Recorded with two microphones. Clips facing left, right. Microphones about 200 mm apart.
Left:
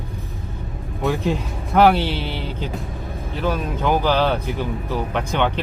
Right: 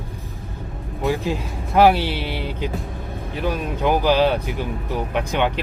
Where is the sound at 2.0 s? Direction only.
10° right (ahead or behind).